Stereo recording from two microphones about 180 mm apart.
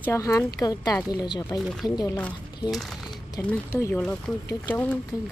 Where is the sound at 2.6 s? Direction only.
Centre (ahead or behind).